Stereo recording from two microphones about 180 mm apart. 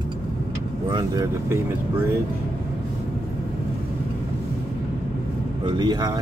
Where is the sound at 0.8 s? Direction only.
25° right (ahead or behind).